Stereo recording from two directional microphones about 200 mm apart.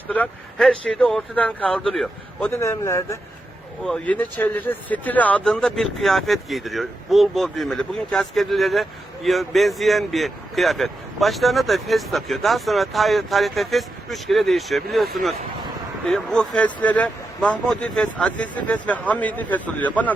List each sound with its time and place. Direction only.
0.1 s a man's voice: 5° left (ahead or behind)
2.5 s a man's voice: 15° left (ahead or behind)